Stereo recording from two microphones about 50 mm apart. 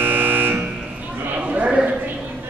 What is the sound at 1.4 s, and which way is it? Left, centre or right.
Horse, right.